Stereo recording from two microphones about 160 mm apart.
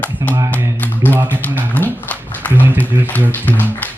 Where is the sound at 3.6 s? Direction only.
10° left (ahead or behind).